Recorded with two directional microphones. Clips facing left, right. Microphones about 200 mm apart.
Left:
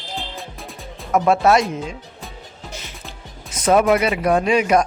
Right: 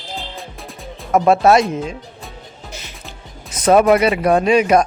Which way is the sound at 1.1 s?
30° right (ahead or behind).